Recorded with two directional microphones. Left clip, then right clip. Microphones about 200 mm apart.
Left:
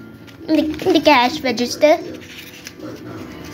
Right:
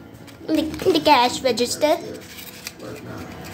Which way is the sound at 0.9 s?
5° left (ahead or behind).